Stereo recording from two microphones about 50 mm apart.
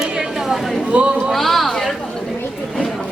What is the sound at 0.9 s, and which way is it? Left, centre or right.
Speech, right.